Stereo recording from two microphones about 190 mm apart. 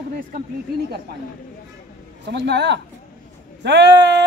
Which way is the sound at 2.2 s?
65° right (ahead or behind).